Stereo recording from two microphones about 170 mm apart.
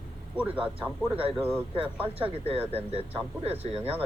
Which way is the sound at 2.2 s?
35° right (ahead or behind).